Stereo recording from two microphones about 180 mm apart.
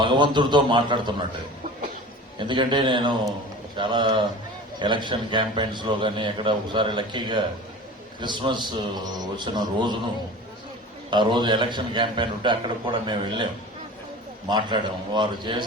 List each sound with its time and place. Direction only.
0.0 s a man's voice: 25° right (ahead or behind)
2.4 s a man's voice: 25° right (ahead or behind)
11.1 s a man's voice: 25° right (ahead or behind)